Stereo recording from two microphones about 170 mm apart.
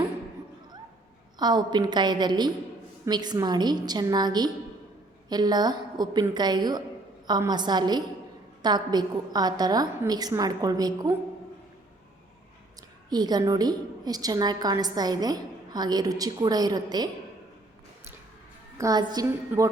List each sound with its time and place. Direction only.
1.4 s a woman's voice: 25° right (ahead or behind)
13.1 s a woman's voice: 25° right (ahead or behind)
18.8 s a woman's voice: 20° right (ahead or behind)